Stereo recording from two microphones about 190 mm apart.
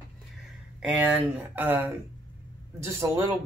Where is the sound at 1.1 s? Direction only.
10° right (ahead or behind).